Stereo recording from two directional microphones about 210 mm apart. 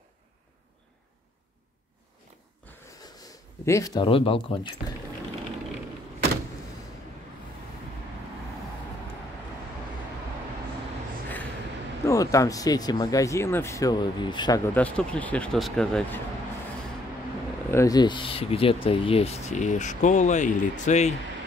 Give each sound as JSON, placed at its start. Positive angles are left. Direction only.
{"t": 2.7, "sound": "snort", "side_deg": 10}
{"t": 3.3, "sound": "speech", "side_deg": 15}
{"t": 12.1, "sound": "speech", "side_deg": 15}
{"t": 14.7, "sound": "speech", "side_deg": 5}
{"t": 17.6, "sound": "speech", "side_deg": 15}